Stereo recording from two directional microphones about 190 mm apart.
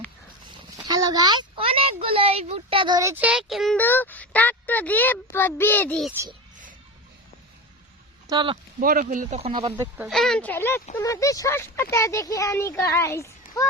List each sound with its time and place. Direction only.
0.4 s a sound: 20° right (ahead or behind); by 3.8 s centre (ahead or behind)
3.8 s speech: 10° left (ahead or behind)
8.3 s speech: 25° right (ahead or behind)
8.8 s speech: 45° right (ahead or behind)
9.7 s speech: 15° right (ahead or behind)
10.1 s speech: centre (ahead or behind)